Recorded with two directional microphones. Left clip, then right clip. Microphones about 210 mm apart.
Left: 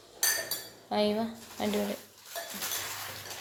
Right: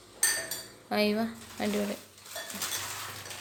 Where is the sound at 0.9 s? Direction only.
15° right (ahead or behind).